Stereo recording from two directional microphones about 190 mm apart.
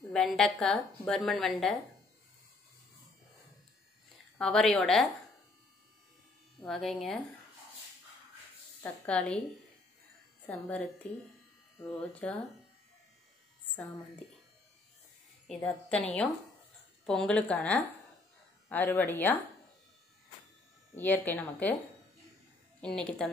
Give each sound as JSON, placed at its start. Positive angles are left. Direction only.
{"t": 0.1, "sound": "a woman's voice", "side_deg": 5}
{"t": 4.4, "sound": "a woman's voice", "side_deg": 5}
{"t": 6.6, "sound": "a woman's voice", "side_deg": 0}
{"t": 8.8, "sound": "a woman's voice", "side_deg": 5}
{"t": 10.4, "sound": "a woman's voice", "side_deg": 10}
{"t": 12.0, "sound": "a woman's voice", "side_deg": 5}
{"t": 15.4, "sound": "a woman's voice", "side_deg": 5}
{"t": 20.9, "sound": "a woman's voice", "side_deg": 10}
{"t": 22.8, "sound": "a woman's voice", "side_deg": 5}